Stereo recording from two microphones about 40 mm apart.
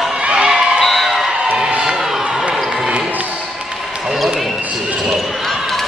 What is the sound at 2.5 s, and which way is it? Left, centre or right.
Basketball bounce, centre.